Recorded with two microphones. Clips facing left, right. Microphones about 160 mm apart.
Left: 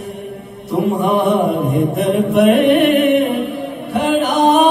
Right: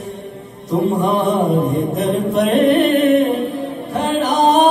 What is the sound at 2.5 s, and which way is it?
Music, 30° right (ahead or behind).